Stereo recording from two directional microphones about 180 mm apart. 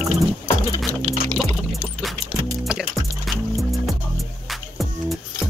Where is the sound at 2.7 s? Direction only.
Centre (ahead or behind).